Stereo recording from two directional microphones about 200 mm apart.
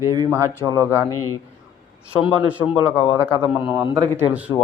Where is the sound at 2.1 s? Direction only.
5° right (ahead or behind).